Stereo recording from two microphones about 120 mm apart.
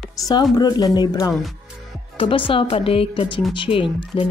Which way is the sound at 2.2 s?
45° left (ahead or behind).